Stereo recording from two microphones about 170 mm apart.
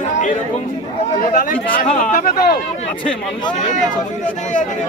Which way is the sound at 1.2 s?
55° left (ahead or behind).